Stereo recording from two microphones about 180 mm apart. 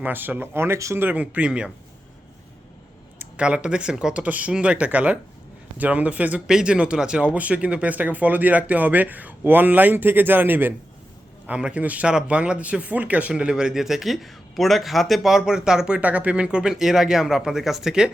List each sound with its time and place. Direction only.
0.0 s speech: 10° right (ahead or behind)
3.2 s speech: 5° right (ahead or behind)